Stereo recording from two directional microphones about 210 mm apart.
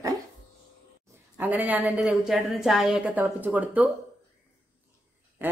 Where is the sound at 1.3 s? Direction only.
10° right (ahead or behind).